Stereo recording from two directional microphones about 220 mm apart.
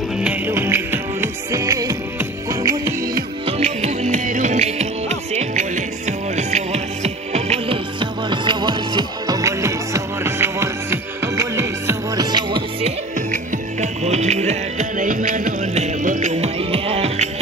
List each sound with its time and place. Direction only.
0.2 s music: 10° right (ahead or behind)
3.5 s music: 30° right (ahead or behind)
13.3 s music: 30° right (ahead or behind)